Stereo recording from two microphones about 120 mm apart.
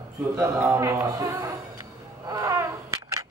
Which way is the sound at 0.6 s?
25° right (ahead or behind).